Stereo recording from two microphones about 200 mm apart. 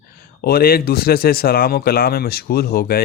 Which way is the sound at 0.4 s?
50° left (ahead or behind).